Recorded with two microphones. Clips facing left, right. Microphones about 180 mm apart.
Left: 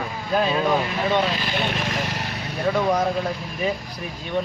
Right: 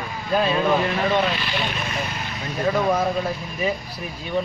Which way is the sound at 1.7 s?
80° left.